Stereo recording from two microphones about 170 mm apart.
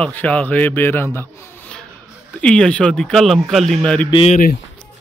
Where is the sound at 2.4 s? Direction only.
5° left (ahead or behind).